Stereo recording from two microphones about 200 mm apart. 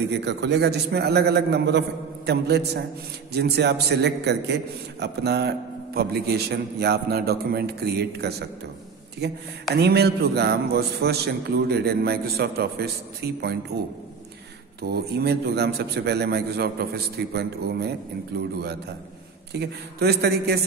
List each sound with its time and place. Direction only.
0.2 s a man's voice: 60° right (ahead or behind)
14.8 s a man's voice: 55° right (ahead or behind)